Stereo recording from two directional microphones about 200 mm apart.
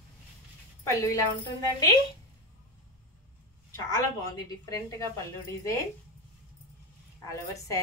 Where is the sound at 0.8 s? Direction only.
15° left (ahead or behind).